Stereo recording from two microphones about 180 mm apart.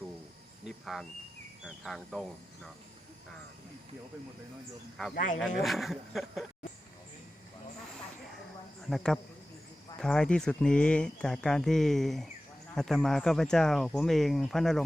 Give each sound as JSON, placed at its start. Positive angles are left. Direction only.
{"t": 1.6, "sound": "speech", "side_deg": 0}
{"t": 5.1, "sound": "speech", "side_deg": 45}
{"t": 5.4, "sound": "speech", "side_deg": 0}
{"t": 10.0, "sound": "speech", "side_deg": 5}